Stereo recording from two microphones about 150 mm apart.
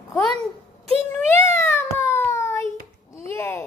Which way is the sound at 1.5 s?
15° left (ahead or behind).